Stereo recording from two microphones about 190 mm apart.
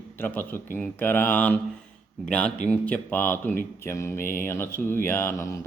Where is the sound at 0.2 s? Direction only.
10° left (ahead or behind).